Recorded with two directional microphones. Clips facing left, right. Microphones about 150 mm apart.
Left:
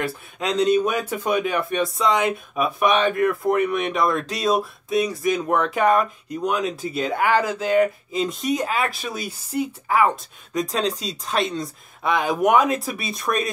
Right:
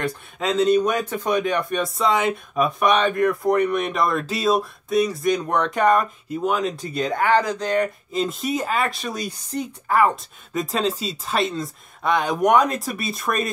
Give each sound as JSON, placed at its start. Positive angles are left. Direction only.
{"t": 0.0, "sound": "a man's voice", "side_deg": 0}